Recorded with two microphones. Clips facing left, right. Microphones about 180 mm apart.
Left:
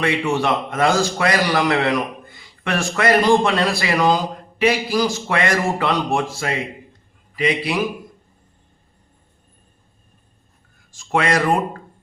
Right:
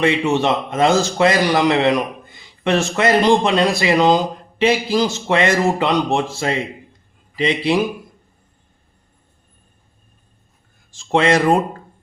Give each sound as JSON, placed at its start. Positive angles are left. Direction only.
{"t": 0.0, "sound": "a man's voice", "side_deg": -20}
{"t": 10.9, "sound": "a man's voice", "side_deg": -25}